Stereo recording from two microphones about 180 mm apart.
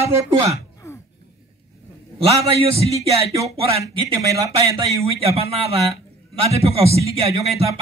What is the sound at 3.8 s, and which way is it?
A man's voice, 15° right (ahead or behind).